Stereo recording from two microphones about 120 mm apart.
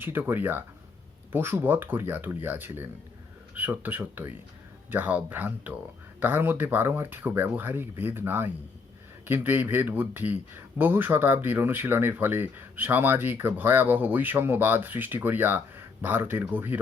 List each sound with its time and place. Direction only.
0.0 s speech: 20° right (ahead or behind)